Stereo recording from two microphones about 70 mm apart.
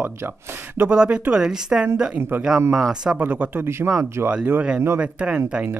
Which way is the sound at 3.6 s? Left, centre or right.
Right.